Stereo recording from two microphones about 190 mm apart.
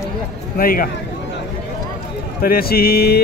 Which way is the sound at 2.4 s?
50° left (ahead or behind).